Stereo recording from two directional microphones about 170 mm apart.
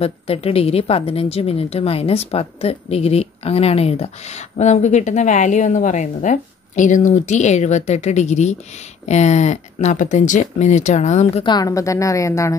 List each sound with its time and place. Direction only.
0.0 s speech: 35° left (ahead or behind)
11.4 s a woman's voice: 20° left (ahead or behind)